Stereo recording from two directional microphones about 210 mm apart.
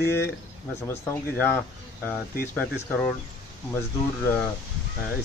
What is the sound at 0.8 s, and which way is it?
Speech, 10° left (ahead or behind).